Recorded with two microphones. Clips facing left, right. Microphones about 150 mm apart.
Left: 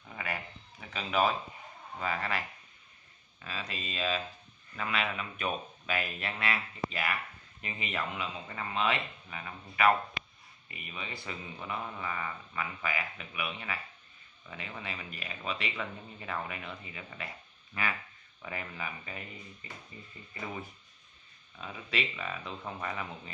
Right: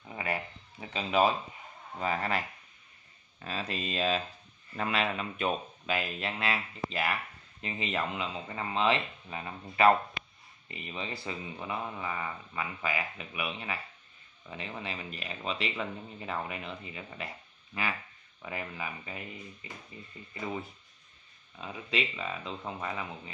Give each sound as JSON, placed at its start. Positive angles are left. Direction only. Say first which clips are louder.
{"t": 0.1, "sound": "a sound", "louder": "right 4 dB", "side_deg": -30}
{"t": 3.3, "sound": "speech", "louder": "right 5 dB", "side_deg": -35}
{"t": 11.5, "sound": "a man's voice", "louder": "even", "side_deg": -15}
{"t": 18.4, "sound": "a man's voice", "louder": "right 2 dB", "side_deg": -15}
{"t": 20.3, "sound": "a man's voice", "louder": "right 4 dB", "side_deg": -15}